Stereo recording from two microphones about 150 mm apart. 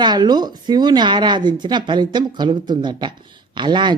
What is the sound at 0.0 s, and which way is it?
Speech, 30° right (ahead or behind).